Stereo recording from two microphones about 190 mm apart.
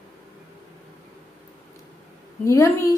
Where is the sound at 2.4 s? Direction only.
15° left (ahead or behind).